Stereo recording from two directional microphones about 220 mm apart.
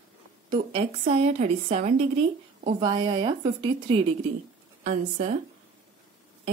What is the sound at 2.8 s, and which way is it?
Speech, 20° right (ahead or behind).